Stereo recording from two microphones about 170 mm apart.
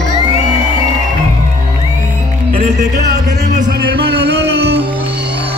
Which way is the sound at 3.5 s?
60° right (ahead or behind).